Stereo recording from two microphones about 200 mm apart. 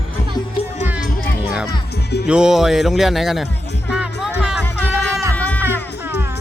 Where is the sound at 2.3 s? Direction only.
5° right (ahead or behind).